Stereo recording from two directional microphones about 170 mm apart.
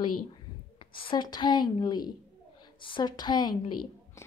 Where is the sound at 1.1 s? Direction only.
25° left (ahead or behind).